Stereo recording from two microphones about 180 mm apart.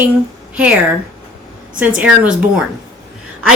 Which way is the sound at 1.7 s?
5° right (ahead or behind).